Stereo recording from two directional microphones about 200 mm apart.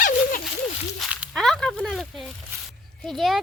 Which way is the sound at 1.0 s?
5° right (ahead or behind).